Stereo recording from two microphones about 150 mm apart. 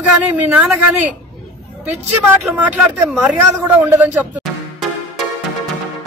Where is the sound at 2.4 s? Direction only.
5° right (ahead or behind).